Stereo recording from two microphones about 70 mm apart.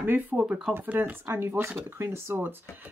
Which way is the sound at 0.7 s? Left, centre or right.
Right.